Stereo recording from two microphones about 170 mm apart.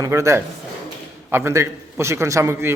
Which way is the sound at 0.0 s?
15° right (ahead or behind).